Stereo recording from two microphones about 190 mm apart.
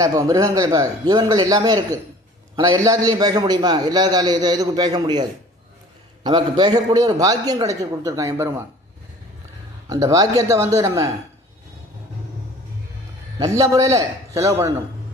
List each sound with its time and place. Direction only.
0.0 s a man's voice: 20° right (ahead or behind)
6.2 s a man's voice: 20° right (ahead or behind)
9.9 s a man's voice: 20° right (ahead or behind)
13.4 s a man's voice: 15° right (ahead or behind)